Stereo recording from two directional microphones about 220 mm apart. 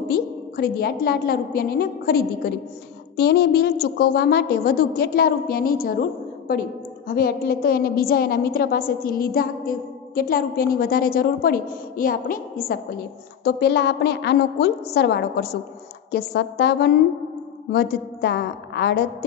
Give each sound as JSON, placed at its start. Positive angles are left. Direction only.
{"t": 0.1, "sound": "a woman's voice", "side_deg": 45}
{"t": 7.1, "sound": "a woman's voice", "side_deg": 45}